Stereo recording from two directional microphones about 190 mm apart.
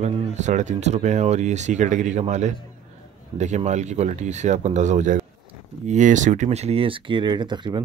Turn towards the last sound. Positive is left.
turn(degrees=-25)  # may be behind; listen again after turning